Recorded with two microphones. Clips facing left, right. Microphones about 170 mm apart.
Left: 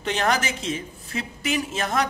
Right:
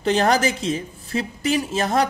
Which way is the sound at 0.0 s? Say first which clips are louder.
Right 6 dB; 35° right (ahead or behind).